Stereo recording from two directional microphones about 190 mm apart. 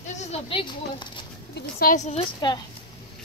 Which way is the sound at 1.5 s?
50° left (ahead or behind).